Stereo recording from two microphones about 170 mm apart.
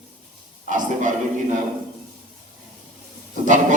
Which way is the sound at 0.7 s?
50° right (ahead or behind).